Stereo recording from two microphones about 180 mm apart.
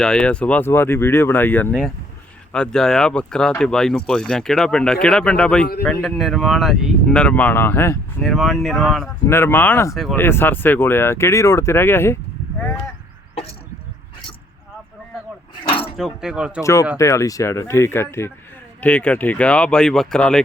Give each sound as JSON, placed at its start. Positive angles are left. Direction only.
{"t": 0.0, "sound": "speech", "side_deg": 5}
{"t": 8.2, "sound": "speech", "side_deg": 0}
{"t": 9.2, "sound": "speech", "side_deg": 15}
{"t": 9.9, "sound": "speech", "side_deg": 0}
{"t": 10.2, "sound": "speech", "side_deg": 10}
{"t": 15.6, "sound": "a sound", "side_deg": 30}
{"t": 16.0, "sound": "speech", "side_deg": 0}
{"t": 17.0, "sound": "speech", "side_deg": 15}